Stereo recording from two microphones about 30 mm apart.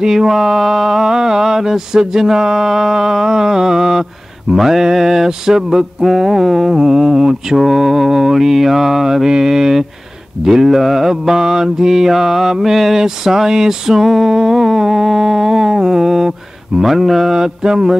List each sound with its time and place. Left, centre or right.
0.0 s mantra: centre
7.5 s mantra: centre
14.3 s humming: centre
14.8 s mantra: centre
17.3 s mantra: centre